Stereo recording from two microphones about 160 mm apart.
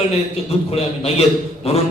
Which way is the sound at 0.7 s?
40° left (ahead or behind).